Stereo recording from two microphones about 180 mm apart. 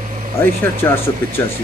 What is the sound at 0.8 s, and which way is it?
Speech, 15° left (ahead or behind).